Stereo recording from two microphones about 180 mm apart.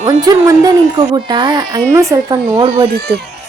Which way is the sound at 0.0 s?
20° right (ahead or behind).